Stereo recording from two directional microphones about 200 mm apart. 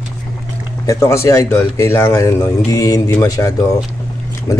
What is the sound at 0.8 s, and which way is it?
Speech, 15° left (ahead or behind).